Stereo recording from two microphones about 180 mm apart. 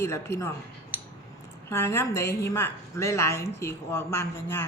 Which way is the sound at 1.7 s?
15° left (ahead or behind).